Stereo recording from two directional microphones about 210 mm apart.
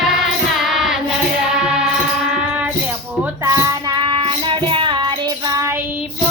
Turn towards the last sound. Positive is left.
turn(degrees=-15)  # may be behind; listen again after turning